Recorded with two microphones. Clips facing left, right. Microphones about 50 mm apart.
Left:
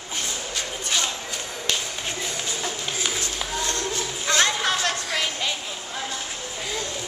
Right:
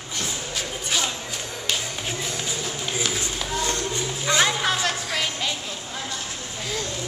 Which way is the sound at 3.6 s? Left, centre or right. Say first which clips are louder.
Right 1 dB; centre.